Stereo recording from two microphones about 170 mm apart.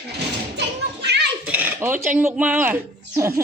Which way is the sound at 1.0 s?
85° right.